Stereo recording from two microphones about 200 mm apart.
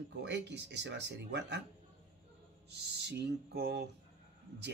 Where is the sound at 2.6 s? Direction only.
60° right (ahead or behind).